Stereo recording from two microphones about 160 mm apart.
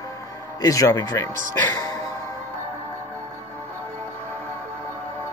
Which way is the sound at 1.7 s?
25° left (ahead or behind).